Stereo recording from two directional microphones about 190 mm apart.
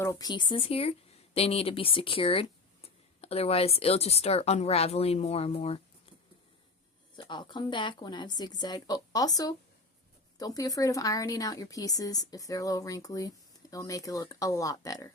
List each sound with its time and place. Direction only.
0.0 s a woman's voice: 15° left (ahead or behind)
7.2 s a woman's voice: 25° left (ahead or behind)